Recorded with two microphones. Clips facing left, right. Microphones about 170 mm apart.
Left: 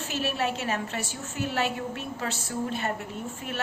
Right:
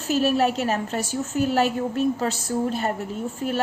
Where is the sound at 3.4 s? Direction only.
40° right (ahead or behind).